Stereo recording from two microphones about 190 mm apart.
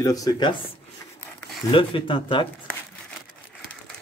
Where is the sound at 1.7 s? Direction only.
25° left (ahead or behind).